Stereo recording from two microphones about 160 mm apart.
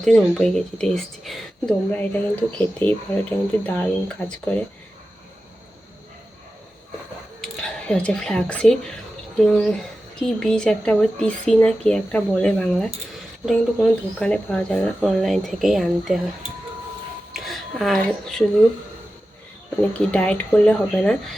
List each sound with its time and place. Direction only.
0.0 s speech: 5° left (ahead or behind)
7.6 s speech: 5° left (ahead or behind)
17.3 s speech: centre (ahead or behind)
19.8 s speech: 10° left (ahead or behind)